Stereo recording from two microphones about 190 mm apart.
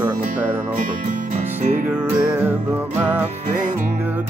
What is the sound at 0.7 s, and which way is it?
Music, 45° right (ahead or behind).